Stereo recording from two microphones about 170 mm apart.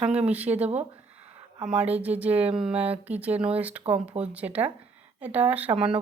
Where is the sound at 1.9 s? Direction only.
10° right (ahead or behind).